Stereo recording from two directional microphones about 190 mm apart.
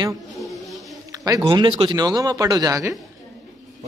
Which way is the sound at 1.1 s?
20° right (ahead or behind).